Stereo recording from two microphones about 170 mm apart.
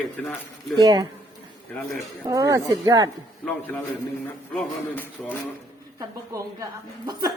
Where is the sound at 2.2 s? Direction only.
20° right (ahead or behind).